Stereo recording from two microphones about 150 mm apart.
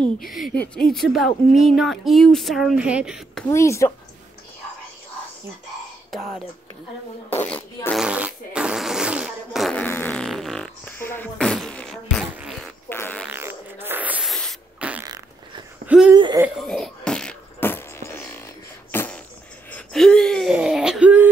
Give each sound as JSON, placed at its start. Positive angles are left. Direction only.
{"t": 0.0, "sound": "speech", "side_deg": 0}
{"t": 3.4, "sound": "speech", "side_deg": 20}
{"t": 7.2, "sound": "speech", "side_deg": 10}
{"t": 8.0, "sound": "fart", "side_deg": -5}
{"t": 10.2, "sound": "fart", "side_deg": 0}
{"t": 12.9, "sound": "fart", "side_deg": 15}
{"t": 13.3, "sound": "a sound", "side_deg": -15}
{"t": 14.3, "sound": "sneeze", "side_deg": 0}
{"t": 15.0, "sound": "fart", "side_deg": -25}
{"t": 15.9, "sound": "speech", "side_deg": -10}
{"t": 16.5, "sound": "a sound", "side_deg": 0}
{"t": 19.7, "sound": "gasp", "side_deg": 5}
{"t": 20.5, "sound": "wheeze", "side_deg": -5}